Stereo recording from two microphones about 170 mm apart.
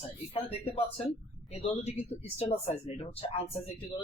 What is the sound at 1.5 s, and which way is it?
Speech, 40° left (ahead or behind).